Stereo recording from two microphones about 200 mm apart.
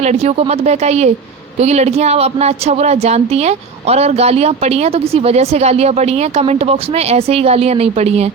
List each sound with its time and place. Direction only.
0.0 s a woman's voice: 35° right (ahead or behind)